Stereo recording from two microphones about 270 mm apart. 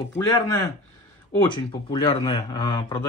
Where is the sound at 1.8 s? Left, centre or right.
Centre.